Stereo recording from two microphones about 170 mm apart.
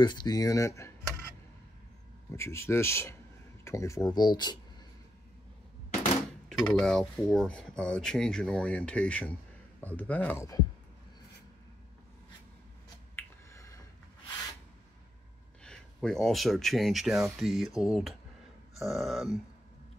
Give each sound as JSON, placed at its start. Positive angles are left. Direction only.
{"t": 0.0, "sound": "speech", "side_deg": 25}
{"t": 2.3, "sound": "speech", "side_deg": 15}
{"t": 6.6, "sound": "speech", "side_deg": 5}
{"t": 13.1, "sound": "a sound", "side_deg": 15}
{"t": 15.6, "sound": "speech", "side_deg": 5}